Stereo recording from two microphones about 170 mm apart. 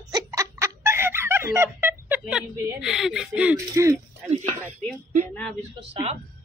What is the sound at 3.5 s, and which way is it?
Speech, 15° right (ahead or behind).